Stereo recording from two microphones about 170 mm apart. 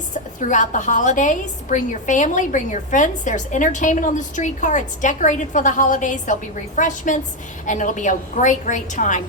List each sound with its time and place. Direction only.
0.1 s a woman's voice: 45° left (ahead or behind)